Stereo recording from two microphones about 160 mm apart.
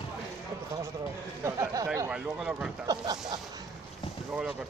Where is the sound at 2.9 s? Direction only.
25° right (ahead or behind).